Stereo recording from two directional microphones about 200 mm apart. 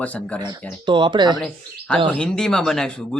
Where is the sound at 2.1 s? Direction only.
5° left (ahead or behind).